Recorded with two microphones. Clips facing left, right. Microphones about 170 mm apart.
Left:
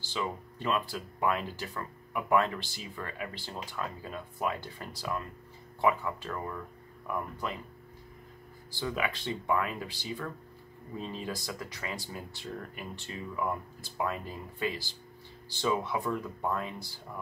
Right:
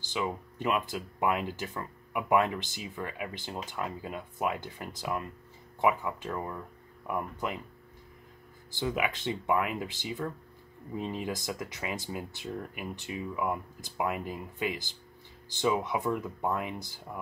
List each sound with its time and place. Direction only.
0.0 s speech: 15° right (ahead or behind)
8.7 s speech: 20° right (ahead or behind)